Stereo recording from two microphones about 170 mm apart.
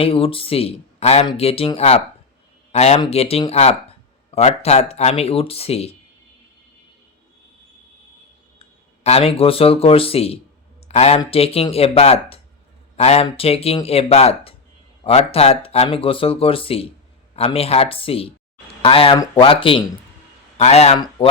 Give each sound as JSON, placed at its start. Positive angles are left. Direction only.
{"t": 0.0, "sound": "speech", "side_deg": 35}
{"t": 9.0, "sound": "speech", "side_deg": 35}